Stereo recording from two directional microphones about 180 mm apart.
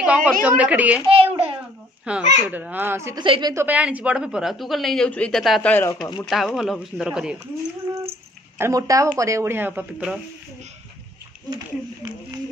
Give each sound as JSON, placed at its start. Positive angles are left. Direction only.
{"t": 0.0, "sound": "a woman's voice", "side_deg": -5}
{"t": 1.0, "sound": "a child's voice", "side_deg": -30}
{"t": 2.0, "sound": "speech", "side_deg": -10}
{"t": 3.2, "sound": "a woman's voice", "side_deg": -25}
{"t": 3.6, "sound": "a woman's voice", "side_deg": -10}
{"t": 8.5, "sound": "speech", "side_deg": -15}